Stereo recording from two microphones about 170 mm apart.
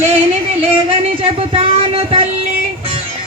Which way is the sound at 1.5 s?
35° right (ahead or behind).